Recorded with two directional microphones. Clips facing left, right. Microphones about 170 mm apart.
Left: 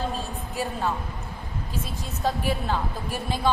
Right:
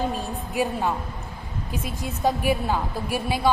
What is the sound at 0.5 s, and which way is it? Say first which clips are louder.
A woman's voice: right 4 dB; 15° right (ahead or behind).